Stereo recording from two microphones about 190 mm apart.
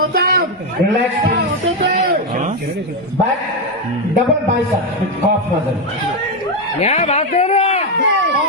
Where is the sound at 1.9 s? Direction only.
40° right (ahead or behind).